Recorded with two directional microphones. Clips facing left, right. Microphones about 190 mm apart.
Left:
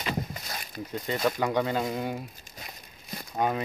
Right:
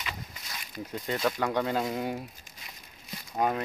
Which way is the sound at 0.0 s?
45° left (ahead or behind).